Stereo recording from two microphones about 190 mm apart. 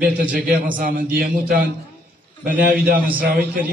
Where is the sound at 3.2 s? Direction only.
50° right (ahead or behind).